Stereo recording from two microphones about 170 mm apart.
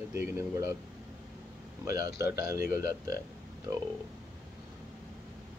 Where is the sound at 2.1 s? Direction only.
20° right (ahead or behind).